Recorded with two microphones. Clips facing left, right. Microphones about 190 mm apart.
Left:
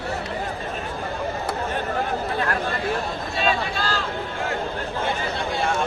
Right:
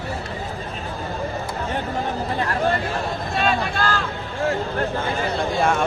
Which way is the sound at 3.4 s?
55° right (ahead or behind).